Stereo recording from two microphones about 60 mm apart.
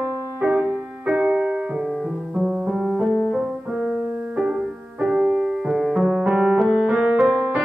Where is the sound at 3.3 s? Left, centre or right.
Centre.